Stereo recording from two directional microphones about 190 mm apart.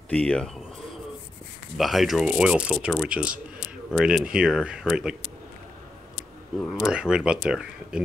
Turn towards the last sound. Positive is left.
turn(degrees=-5)  # may be behind; listen again after turning